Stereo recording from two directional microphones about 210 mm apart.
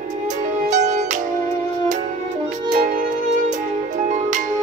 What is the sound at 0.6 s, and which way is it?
Music, 35° right (ahead or behind).